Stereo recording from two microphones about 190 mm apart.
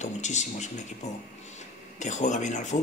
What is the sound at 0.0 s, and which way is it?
Speech, 40° left (ahead or behind).